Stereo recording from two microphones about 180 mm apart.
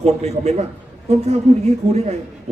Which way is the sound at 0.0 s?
35° right (ahead or behind).